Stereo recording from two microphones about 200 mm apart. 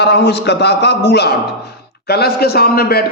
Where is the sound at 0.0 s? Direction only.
55° left (ahead or behind).